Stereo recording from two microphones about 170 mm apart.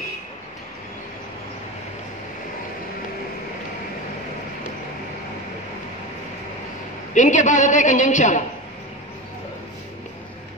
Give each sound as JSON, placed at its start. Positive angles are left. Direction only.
{"t": 7.2, "sound": "a woman's voice", "side_deg": 45}